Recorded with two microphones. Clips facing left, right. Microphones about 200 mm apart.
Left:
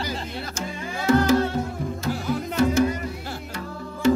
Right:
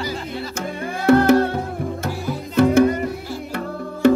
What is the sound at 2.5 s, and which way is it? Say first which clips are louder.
Music: right 7 dB; 60° right (ahead or behind).